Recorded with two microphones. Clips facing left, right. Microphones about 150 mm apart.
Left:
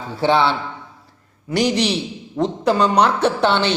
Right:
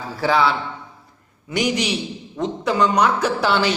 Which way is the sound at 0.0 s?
25° left (ahead or behind).